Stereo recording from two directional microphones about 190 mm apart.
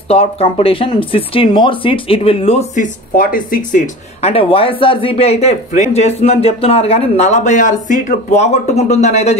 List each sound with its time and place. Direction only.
0.1 s speech: 30° left (ahead or behind)